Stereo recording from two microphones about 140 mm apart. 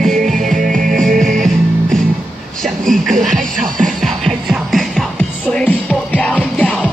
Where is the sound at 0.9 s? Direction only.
5° left (ahead or behind).